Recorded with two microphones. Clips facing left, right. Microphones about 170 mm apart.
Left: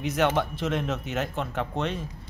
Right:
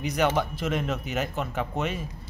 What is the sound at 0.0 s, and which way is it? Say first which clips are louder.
Speech: even; centre (ahead or behind).